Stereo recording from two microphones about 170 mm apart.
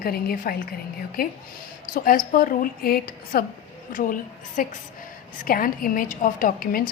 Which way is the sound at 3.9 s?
50° left (ahead or behind).